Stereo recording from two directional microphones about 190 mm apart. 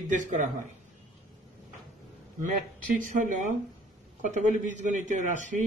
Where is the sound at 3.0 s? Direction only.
45° right (ahead or behind).